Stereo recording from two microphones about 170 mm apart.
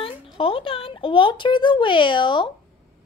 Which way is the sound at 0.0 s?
35° left (ahead or behind).